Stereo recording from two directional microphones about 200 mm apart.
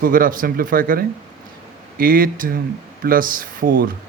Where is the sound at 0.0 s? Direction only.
45° right (ahead or behind).